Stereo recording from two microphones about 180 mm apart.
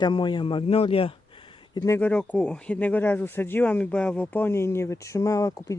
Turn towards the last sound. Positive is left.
turn(degrees=20)  # may be behind; listen again after turning